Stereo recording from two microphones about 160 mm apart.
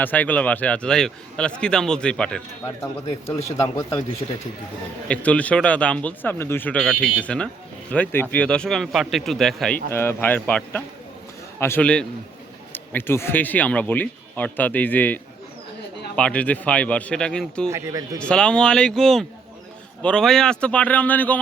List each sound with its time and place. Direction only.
0.0 s speech: 10° left (ahead or behind)
3.2 s speech: 15° left (ahead or behind)
5.0 s speech: 10° left (ahead or behind)
9.9 s speech: 15° left (ahead or behind)
17.7 s speech: 20° right (ahead or behind)
18.2 s speech: 5° left (ahead or behind)